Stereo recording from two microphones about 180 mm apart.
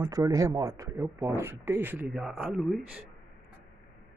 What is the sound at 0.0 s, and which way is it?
Speech, 20° right (ahead or behind).